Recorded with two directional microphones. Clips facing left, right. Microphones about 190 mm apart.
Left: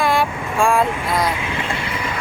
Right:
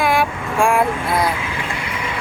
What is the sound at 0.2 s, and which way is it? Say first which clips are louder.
Vehicle: right 1 dB; 10° right (ahead or behind).